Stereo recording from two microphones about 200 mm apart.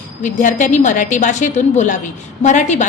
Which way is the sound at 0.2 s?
40° left (ahead or behind).